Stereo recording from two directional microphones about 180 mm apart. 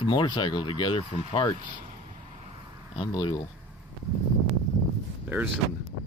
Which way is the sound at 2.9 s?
25° left (ahead or behind).